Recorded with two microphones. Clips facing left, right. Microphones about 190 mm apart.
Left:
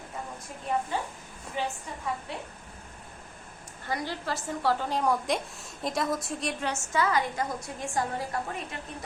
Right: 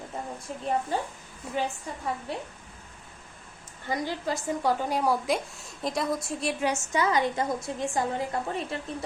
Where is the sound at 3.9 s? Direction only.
15° right (ahead or behind); by 6.5 s centre (ahead or behind).